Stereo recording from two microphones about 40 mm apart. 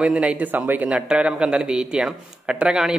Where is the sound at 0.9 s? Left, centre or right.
Right.